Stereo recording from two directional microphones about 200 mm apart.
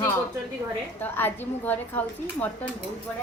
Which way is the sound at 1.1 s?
10° left (ahead or behind).